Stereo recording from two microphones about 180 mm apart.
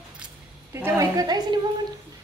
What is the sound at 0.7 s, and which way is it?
Speech, 15° right (ahead or behind).